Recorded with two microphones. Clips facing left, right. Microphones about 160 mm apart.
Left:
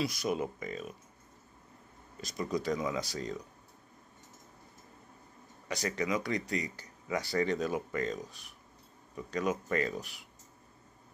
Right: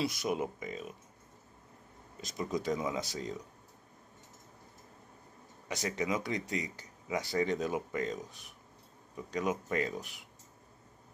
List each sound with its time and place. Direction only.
0.0 s speech: 20° right (ahead or behind)
2.2 s speech: 20° right (ahead or behind)
5.9 s speech: 20° right (ahead or behind)